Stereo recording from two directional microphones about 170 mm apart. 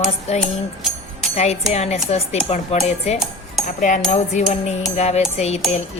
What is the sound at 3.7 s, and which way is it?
Cutlery, 50° left (ahead or behind).